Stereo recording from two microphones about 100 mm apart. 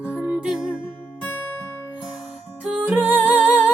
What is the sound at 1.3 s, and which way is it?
Music, 20° left (ahead or behind).